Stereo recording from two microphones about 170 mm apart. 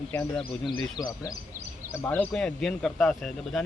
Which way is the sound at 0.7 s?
20° left (ahead or behind).